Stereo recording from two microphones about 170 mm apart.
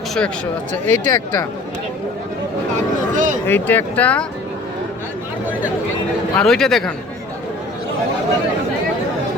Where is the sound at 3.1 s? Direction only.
50° right (ahead or behind).